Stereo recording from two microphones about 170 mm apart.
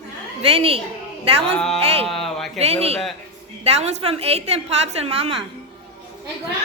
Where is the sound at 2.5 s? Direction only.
35° right (ahead or behind).